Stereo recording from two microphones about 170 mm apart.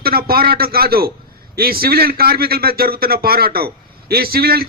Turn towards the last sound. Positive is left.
turn(degrees=-65)  # may be behind; listen again after turning